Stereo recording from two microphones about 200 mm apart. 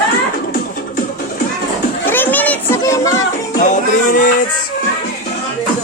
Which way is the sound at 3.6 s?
40° left (ahead or behind).